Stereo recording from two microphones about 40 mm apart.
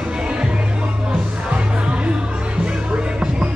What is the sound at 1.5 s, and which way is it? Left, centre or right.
Music, right.